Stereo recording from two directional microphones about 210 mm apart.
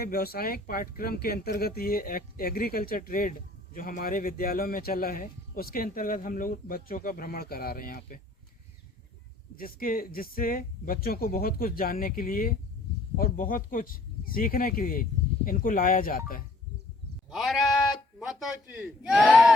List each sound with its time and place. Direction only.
0.0 s speech: 45° left (ahead or behind)
9.6 s speech: 45° left (ahead or behind)
17.2 s bleat: centre (ahead or behind)
18.2 s a man's voice: centre (ahead or behind)